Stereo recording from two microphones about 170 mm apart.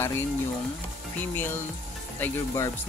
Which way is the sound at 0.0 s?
15° left (ahead or behind).